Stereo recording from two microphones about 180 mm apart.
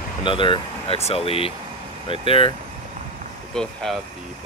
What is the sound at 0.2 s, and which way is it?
Speech, 30° left (ahead or behind).